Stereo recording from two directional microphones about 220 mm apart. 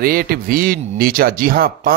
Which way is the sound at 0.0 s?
40° right (ahead or behind).